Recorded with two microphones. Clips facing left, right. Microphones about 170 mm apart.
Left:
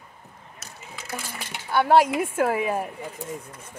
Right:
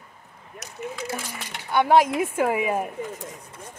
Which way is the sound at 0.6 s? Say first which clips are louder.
Even; 20° right (ahead or behind).